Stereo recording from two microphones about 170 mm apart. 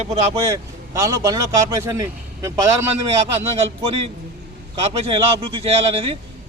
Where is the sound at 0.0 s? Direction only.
40° right (ahead or behind).